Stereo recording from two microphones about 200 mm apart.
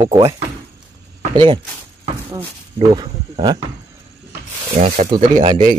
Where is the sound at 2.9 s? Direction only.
20° right (ahead or behind).